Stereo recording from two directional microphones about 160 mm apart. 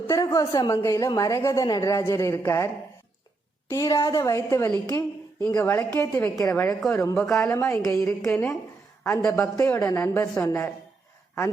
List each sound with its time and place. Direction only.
0.1 s a woman's voice: 20° left (ahead or behind)
3.7 s a woman's voice: 20° left (ahead or behind)
5.5 s a woman's voice: 10° left (ahead or behind)